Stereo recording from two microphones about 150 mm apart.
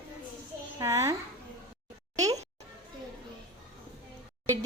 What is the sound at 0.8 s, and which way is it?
Speech, 20° right (ahead or behind).